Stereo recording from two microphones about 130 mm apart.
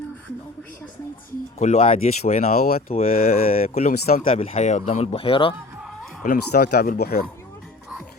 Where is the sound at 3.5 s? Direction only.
65° left (ahead or behind); by 5.5 s 45° left (ahead or behind).